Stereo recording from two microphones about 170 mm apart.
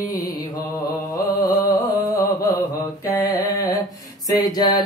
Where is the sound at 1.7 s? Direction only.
20° left (ahead or behind).